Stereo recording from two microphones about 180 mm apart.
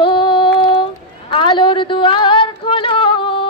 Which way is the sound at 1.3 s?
25° left (ahead or behind).